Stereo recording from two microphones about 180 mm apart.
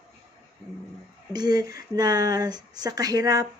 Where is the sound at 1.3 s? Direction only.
25° right (ahead or behind).